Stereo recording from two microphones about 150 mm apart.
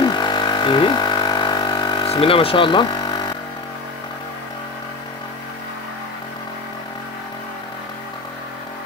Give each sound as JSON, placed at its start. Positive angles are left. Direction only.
{"t": 0.0, "sound": "music", "side_deg": 30}